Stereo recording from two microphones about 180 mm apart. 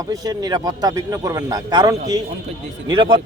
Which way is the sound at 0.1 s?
20° right (ahead or behind).